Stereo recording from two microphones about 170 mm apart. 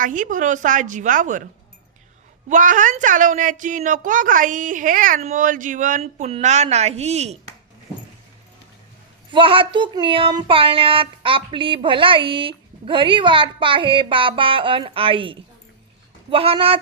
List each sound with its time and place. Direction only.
0.0 s a woman's voice: 50° right (ahead or behind)
2.5 s a woman's voice: 50° right (ahead or behind)
9.3 s speech: 30° right (ahead or behind)